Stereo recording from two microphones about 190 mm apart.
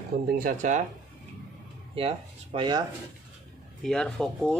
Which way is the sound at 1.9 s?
30° right (ahead or behind).